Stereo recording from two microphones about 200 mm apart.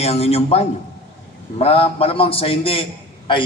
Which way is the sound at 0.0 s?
30° left (ahead or behind).